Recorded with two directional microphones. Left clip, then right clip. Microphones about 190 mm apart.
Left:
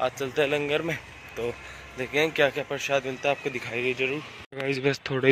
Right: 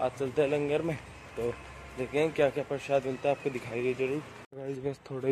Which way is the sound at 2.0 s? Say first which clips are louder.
Left 4 dB; centre (ahead or behind).